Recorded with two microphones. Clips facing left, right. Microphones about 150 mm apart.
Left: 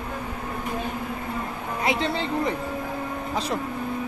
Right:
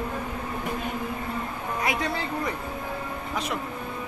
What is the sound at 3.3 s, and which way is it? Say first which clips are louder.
Speech: left 3 dB; 30° left (ahead or behind).